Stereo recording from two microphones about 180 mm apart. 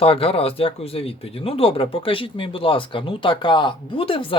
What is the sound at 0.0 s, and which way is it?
Speech, 30° left (ahead or behind).